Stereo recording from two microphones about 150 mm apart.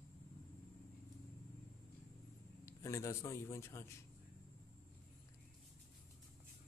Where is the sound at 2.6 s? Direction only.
20° left (ahead or behind).